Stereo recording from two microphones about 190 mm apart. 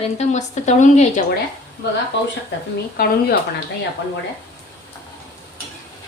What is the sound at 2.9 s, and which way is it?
Speech, 50° left (ahead or behind).